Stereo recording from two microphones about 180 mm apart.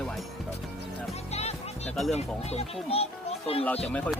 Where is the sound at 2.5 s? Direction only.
35° left (ahead or behind).